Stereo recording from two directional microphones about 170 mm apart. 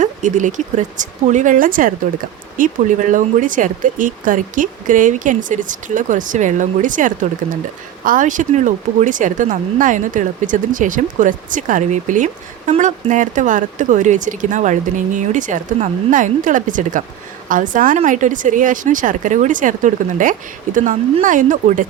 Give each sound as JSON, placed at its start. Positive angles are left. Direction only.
{"t": 0.0, "sound": "speech", "side_deg": -45}